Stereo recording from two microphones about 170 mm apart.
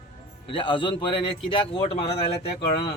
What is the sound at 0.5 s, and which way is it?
A man's voice, 30° left (ahead or behind).